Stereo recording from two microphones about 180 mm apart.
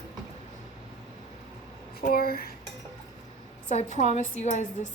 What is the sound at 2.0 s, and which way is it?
Speech, 55° left (ahead or behind).